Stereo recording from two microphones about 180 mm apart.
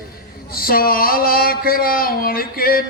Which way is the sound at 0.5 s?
55° left (ahead or behind).